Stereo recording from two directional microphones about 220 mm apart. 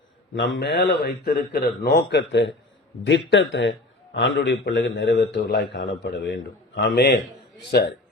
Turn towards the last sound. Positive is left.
turn(degrees=45)  # may be behind; listen again after turning